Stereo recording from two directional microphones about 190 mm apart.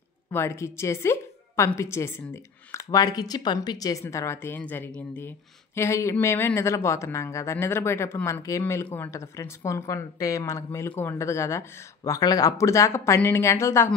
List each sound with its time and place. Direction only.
0.3 s speech: 15° left (ahead or behind)